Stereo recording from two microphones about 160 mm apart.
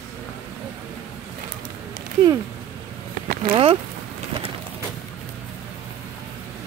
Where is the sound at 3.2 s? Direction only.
70° right (ahead or behind).